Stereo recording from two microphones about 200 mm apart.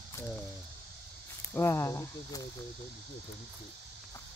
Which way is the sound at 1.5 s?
15° left (ahead or behind).